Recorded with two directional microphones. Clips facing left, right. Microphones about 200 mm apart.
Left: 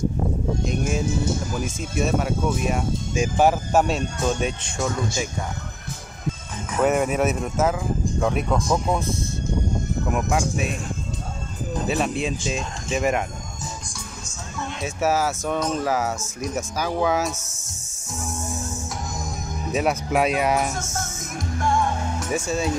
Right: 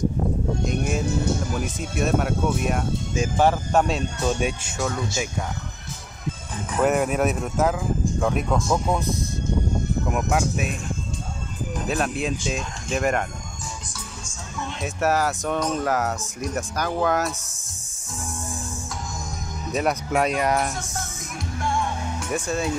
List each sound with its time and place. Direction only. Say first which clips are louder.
0.7 s speech: left 1 dB; centre (ahead or behind)
4.4 s speech: even; 5° right (ahead or behind)
6.8 s speech: left 1 dB; centre (ahead or behind)
10.1 s speech: left 1 dB; centre (ahead or behind)
11.9 s speech: even; centre (ahead or behind)
14.8 s speech: even; centre (ahead or behind)
19.7 s speech: left 1 dB; 5° left (ahead or behind)
20.7 s music: left 2 dB; 45° left (ahead or behind)
22.3 s speech: left 1 dB; centre (ahead or behind)